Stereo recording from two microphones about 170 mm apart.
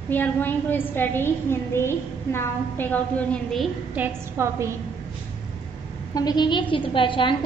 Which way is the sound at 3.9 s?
15° right (ahead or behind).